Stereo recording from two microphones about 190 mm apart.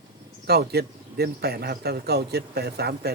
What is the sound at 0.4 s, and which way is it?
A man's voice, 55° right (ahead or behind).